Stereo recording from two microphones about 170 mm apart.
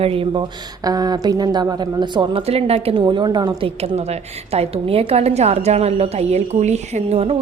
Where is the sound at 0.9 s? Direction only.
25° right (ahead or behind).